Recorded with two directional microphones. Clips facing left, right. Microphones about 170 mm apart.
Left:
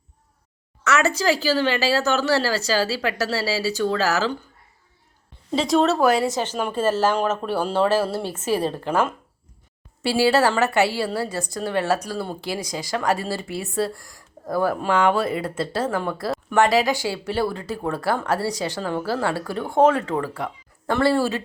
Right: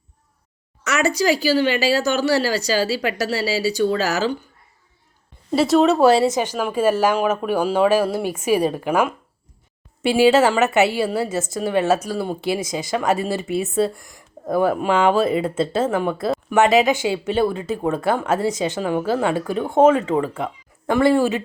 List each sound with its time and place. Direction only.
0.9 s a woman's voice: 15° right (ahead or behind)
5.5 s speech: 5° right (ahead or behind)
6.0 s a woman's voice: 25° right (ahead or behind)